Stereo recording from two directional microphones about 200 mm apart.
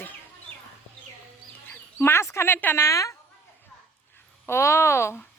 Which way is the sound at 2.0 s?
10° left (ahead or behind).